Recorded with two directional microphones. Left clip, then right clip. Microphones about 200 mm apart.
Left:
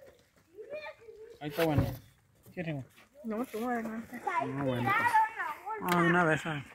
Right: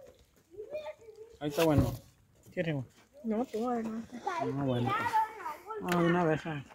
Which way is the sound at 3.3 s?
15° right (ahead or behind).